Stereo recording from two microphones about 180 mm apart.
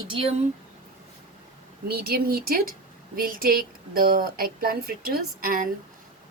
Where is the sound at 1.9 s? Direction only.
60° right (ahead or behind).